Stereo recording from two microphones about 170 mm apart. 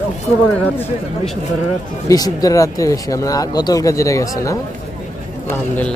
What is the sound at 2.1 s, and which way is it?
Speech, 20° left (ahead or behind).